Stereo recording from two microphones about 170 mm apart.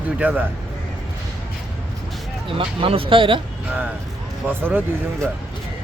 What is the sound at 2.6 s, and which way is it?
Speech, 30° right (ahead or behind).